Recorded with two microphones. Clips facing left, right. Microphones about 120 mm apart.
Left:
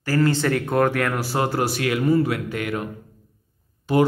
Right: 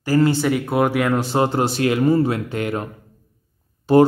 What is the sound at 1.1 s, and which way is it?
Speech, 25° right (ahead or behind).